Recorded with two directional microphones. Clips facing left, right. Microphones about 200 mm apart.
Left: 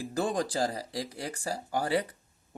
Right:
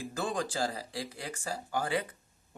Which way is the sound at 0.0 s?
35° left (ahead or behind).